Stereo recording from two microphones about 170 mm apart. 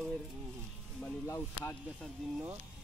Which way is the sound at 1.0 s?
15° left (ahead or behind).